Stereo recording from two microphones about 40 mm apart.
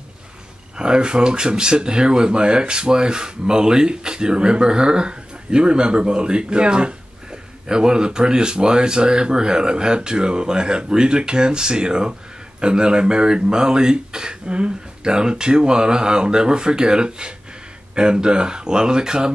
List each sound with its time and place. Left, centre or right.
0.7 s speech: right